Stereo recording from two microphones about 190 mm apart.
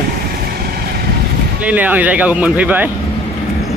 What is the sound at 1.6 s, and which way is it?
Speech, 10° right (ahead or behind).